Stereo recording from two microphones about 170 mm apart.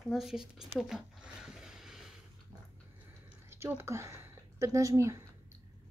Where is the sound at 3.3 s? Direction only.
15° right (ahead or behind).